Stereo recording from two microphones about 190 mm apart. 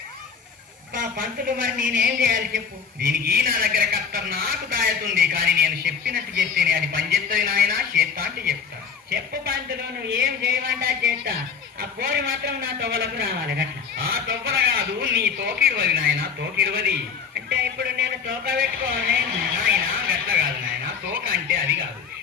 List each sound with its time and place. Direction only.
0.9 s a woman's voice: 45° right (ahead or behind)
10.2 s a woman's voice: 50° right (ahead or behind)